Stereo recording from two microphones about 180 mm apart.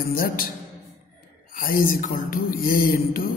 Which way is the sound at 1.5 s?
50° left (ahead or behind).